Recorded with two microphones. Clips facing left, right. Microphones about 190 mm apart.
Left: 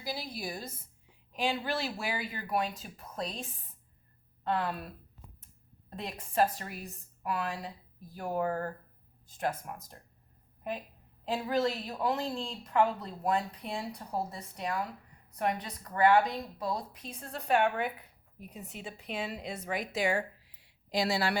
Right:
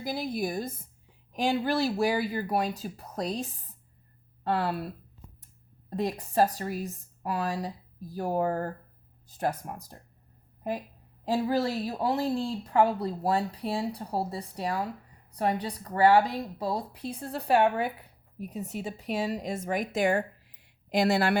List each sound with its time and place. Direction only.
0.0 s a woman's voice: 50° right (ahead or behind); by 4.9 s 30° right (ahead or behind)
6.0 s speech: 40° right (ahead or behind)
11.3 s a woman's voice: 35° right (ahead or behind); by 21.3 s 55° right (ahead or behind)